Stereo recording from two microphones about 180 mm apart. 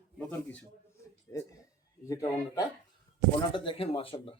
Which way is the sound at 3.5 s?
30° left (ahead or behind).